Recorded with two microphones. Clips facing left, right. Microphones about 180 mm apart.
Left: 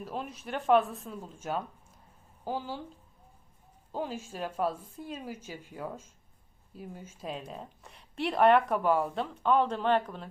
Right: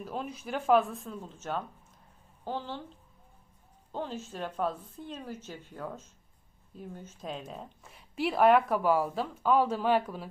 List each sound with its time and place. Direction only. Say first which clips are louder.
0.0 s a woman's voice: right 1 dB; centre (ahead or behind)
3.9 s a woman's voice: left 1 dB; 10° left (ahead or behind); by 10.2 s 5° right (ahead or behind)